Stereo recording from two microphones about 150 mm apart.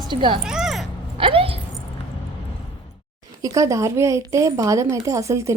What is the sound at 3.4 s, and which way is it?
A woman's voice, 20° right (ahead or behind).